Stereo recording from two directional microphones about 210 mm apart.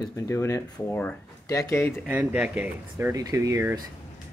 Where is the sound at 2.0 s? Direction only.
5° right (ahead or behind).